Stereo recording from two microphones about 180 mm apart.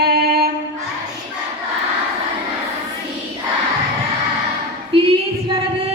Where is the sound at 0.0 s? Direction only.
60° right (ahead or behind).